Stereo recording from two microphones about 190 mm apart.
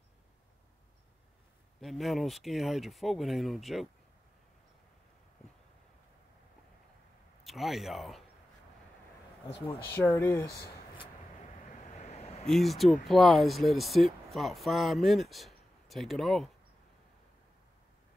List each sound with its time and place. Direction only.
1.8 s speech: centre (ahead or behind)
7.4 s speech: centre (ahead or behind)
10.0 s speech: 15° left (ahead or behind)
11.9 s a sound: 35° left (ahead or behind)
12.4 s speech: centre (ahead or behind)